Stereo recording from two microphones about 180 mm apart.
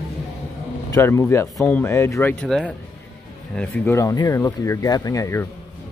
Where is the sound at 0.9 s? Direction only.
15° left (ahead or behind).